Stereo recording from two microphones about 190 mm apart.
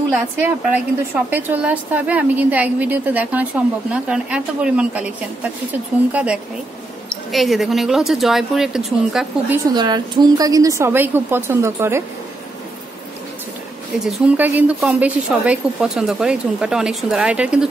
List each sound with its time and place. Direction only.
0.1 s a woman's voice: 10° right (ahead or behind)
9.8 s a woman's voice: 20° right (ahead or behind)
13.9 s a woman's voice: 5° right (ahead or behind)